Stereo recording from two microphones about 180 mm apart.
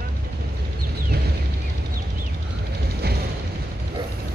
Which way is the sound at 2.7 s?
60° right (ahead or behind).